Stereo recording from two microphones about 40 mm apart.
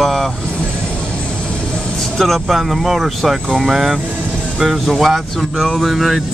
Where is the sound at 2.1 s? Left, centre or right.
Centre.